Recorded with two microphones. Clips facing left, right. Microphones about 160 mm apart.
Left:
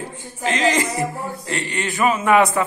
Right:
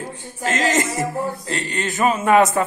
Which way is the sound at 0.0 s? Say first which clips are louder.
Left 1 dB; 40° right (ahead or behind).